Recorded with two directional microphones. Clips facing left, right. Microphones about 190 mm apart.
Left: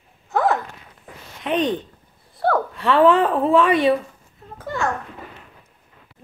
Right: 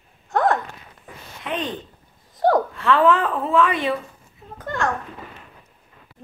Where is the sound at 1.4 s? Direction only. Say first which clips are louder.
Left 7 dB; 20° left (ahead or behind).